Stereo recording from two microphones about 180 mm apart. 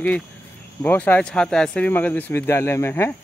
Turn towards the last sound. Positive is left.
turn(degrees=15)  # may be behind; listen again after turning